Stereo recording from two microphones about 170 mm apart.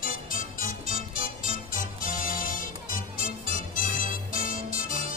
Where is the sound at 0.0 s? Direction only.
55° left (ahead or behind).